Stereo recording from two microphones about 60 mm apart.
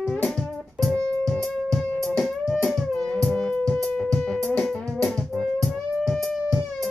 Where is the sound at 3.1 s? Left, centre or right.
Centre.